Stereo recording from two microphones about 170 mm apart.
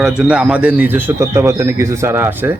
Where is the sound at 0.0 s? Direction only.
5° right (ahead or behind).